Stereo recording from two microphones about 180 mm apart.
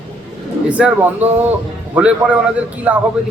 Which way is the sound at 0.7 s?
5° right (ahead or behind).